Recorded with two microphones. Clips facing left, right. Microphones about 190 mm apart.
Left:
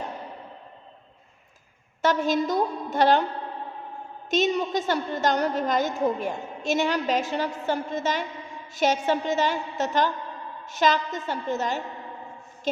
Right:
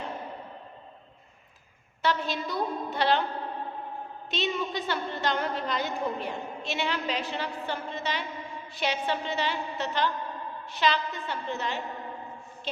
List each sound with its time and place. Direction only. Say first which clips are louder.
2.0 s a woman's voice: left 6 dB; 45° left (ahead or behind)
4.3 s a woman's voice: left 7 dB; 45° left (ahead or behind)